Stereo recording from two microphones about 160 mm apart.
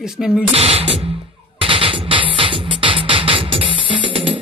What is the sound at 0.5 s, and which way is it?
Speech, 40° right (ahead or behind).